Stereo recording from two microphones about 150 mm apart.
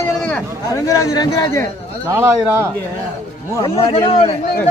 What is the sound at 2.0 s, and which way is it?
Speech, 15° right (ahead or behind).